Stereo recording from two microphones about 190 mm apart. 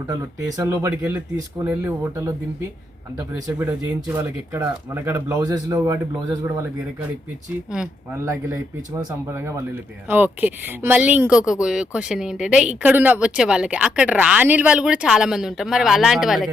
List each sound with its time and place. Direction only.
0.3 s speech: 15° right (ahead or behind)
7.7 s speech: 5° right (ahead or behind)
8.2 s speech: 15° right (ahead or behind)